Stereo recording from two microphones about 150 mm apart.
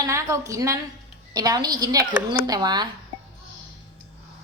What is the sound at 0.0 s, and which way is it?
A woman's voice, 20° right (ahead or behind).